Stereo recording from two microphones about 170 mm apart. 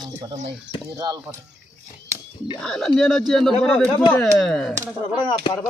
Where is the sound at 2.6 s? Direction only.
Centre (ahead or behind).